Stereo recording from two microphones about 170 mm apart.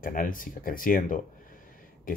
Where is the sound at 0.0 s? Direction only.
55° left (ahead or behind).